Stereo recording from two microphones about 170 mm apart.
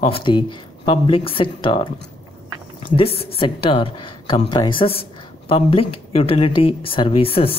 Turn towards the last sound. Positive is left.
turn(degrees=35)  # may be behind; listen again after turning